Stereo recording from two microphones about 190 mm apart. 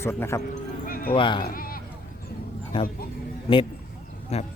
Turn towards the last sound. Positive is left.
turn(degrees=35)  # may be behind; listen again after turning